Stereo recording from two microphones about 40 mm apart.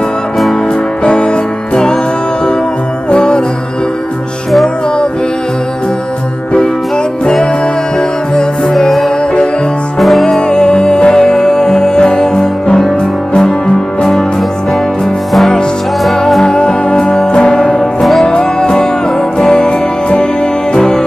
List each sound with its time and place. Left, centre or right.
1.0 s music: left
3.1 s music: left
8.7 s music: centre
10.5 s music: left
16.4 s music: left